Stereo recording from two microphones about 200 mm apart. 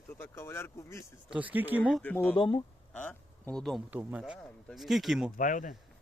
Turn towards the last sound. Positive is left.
turn(degrees=40)  # may be behind; listen again after turning